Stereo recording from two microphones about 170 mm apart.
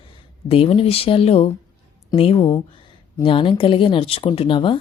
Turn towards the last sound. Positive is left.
turn(degrees=30)  # may be behind; listen again after turning